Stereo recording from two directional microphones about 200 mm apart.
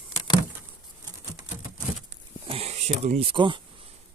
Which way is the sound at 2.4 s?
30° right (ahead or behind).